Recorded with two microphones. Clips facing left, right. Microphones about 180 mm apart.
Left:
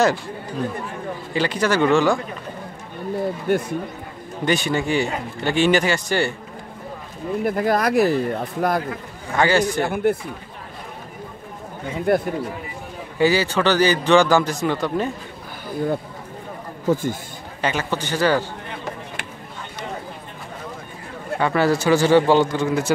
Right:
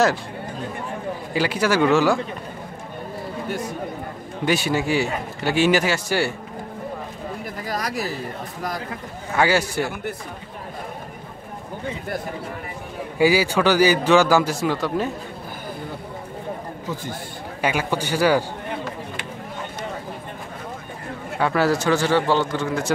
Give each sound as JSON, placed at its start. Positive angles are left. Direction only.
{"t": 1.3, "sound": "a man's voice", "side_deg": -5}
{"t": 3.5, "sound": "speech", "side_deg": 55}
{"t": 4.5, "sound": "a man's voice", "side_deg": -5}
{"t": 7.4, "sound": "speech", "side_deg": 55}
{"t": 9.4, "sound": "a man's voice", "side_deg": -5}
{"t": 9.8, "sound": "speech", "side_deg": 50}
{"t": 12.1, "sound": "speech", "side_deg": 60}
{"t": 13.2, "sound": "a man's voice", "side_deg": -10}
{"t": 16.9, "sound": "speech", "side_deg": 50}
{"t": 17.6, "sound": "a man's voice", "side_deg": -10}
{"t": 21.4, "sound": "speech", "side_deg": 0}